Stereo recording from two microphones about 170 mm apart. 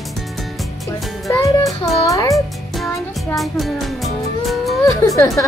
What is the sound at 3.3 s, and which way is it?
Music, centre (ahead or behind).